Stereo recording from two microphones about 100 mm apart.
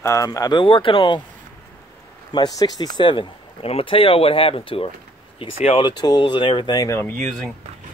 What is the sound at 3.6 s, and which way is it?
Speech, 75° left (ahead or behind).